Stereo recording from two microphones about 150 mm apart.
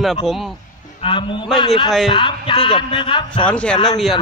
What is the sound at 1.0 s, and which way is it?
A man's voice, 35° left (ahead or behind).